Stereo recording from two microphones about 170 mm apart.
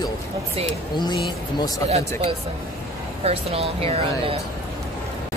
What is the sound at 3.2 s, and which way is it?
Speech, 35° right (ahead or behind).